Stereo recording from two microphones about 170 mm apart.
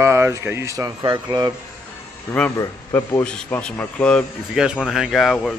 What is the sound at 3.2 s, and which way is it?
Speech, 5° left (ahead or behind).